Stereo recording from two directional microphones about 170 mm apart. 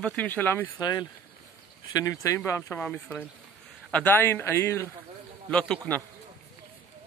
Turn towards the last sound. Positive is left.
turn(degrees=5)  # may be behind; listen again after turning